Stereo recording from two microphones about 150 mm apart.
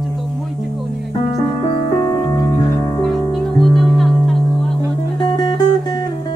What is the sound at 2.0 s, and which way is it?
Music, 25° left (ahead or behind).